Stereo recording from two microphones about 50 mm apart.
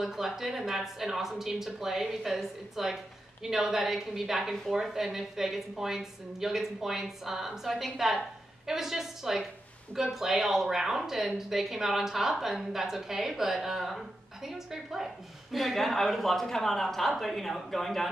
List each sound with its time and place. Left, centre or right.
0.0 s a woman's voice: centre